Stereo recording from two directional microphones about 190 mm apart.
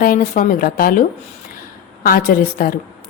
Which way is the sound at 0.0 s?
50° left (ahead or behind).